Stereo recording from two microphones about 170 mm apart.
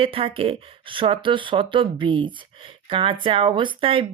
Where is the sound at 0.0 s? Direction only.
35° right (ahead or behind).